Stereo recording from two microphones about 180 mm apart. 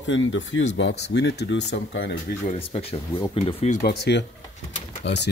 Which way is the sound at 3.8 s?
70° left (ahead or behind).